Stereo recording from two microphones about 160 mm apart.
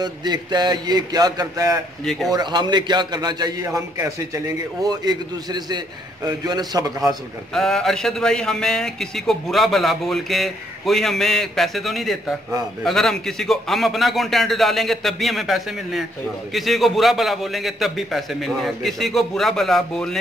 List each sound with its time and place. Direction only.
0.0 s a man's voice: 25° right (ahead or behind)
2.0 s a man's voice: centre (ahead or behind)
2.3 s a man's voice: 25° right (ahead or behind)
7.0 s a man's voice: centre (ahead or behind)